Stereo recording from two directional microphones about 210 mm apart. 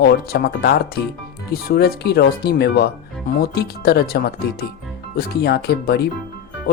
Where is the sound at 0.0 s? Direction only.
50° left (ahead or behind).